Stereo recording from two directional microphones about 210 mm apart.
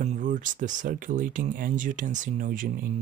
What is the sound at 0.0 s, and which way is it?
Speech, 35° right (ahead or behind).